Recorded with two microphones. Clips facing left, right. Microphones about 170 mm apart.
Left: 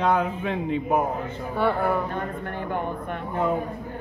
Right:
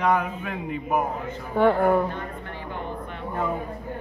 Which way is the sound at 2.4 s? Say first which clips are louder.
Left 5 dB; 55° left (ahead or behind).